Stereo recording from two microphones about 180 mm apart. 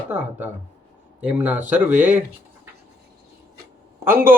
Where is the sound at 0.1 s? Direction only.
10° right (ahead or behind).